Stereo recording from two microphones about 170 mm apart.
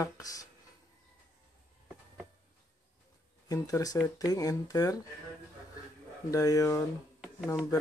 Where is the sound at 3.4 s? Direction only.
20° left (ahead or behind).